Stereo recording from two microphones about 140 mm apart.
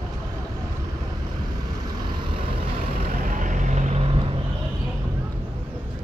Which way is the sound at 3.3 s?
65° right (ahead or behind).